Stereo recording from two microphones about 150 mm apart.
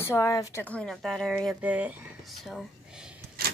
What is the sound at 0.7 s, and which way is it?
Speech, 5° left (ahead or behind).